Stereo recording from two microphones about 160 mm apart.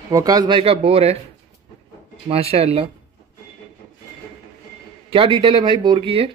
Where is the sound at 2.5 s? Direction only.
40° right (ahead or behind).